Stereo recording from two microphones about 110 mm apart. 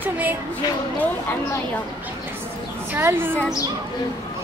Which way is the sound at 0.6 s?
35° left (ahead or behind).